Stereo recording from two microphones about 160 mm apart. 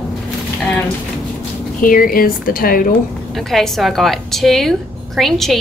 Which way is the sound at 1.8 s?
60° left (ahead or behind).